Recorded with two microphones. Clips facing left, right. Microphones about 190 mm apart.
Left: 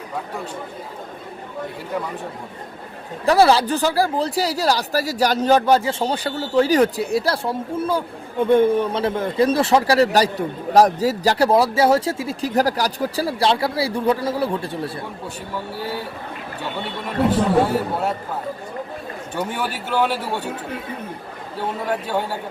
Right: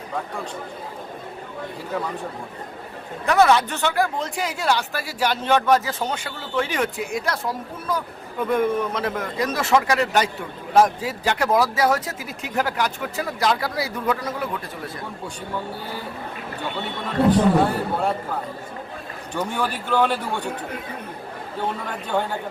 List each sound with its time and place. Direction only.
3.2 s speech: 30° left (ahead or behind)
19.3 s a man's voice: 5° left (ahead or behind)
21.8 s a man's voice: 5° left (ahead or behind)